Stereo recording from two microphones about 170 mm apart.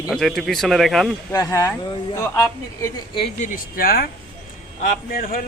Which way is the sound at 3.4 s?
60° left (ahead or behind).